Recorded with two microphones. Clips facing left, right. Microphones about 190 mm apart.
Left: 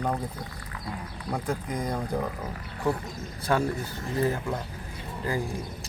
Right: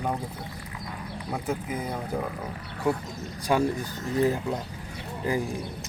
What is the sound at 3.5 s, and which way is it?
Speech, 15° right (ahead or behind).